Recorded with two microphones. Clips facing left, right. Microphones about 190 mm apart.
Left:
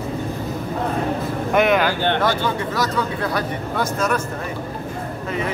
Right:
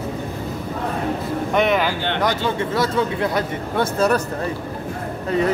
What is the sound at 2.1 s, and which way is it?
Speech, 20° right (ahead or behind).